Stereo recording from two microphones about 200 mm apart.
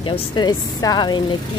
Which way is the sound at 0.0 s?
25° left (ahead or behind).